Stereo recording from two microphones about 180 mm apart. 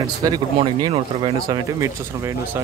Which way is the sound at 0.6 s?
25° right (ahead or behind).